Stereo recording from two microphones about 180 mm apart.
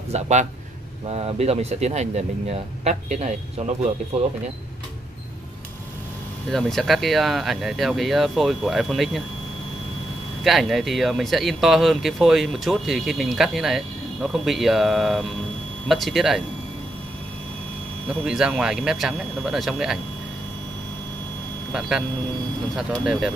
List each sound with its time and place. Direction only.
0.1 s speech: 40° right (ahead or behind)
6.5 s speech: centre (ahead or behind)
10.4 s speech: centre (ahead or behind)
18.2 s speech: 5° right (ahead or behind)
21.7 s speech: centre (ahead or behind)